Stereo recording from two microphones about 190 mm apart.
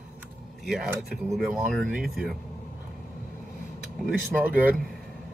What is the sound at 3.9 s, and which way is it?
Speech, 5° right (ahead or behind).